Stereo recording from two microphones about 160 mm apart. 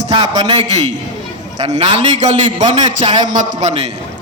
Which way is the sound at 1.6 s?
40° right (ahead or behind).